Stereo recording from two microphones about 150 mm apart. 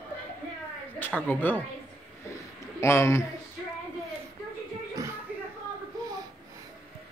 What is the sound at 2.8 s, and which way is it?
Speech, 20° left (ahead or behind).